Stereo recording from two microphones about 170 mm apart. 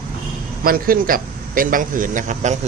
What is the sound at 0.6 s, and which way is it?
A man's voice, 60° right (ahead or behind).